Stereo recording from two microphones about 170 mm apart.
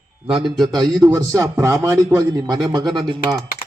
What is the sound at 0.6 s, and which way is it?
A man's voice, 25° right (ahead or behind).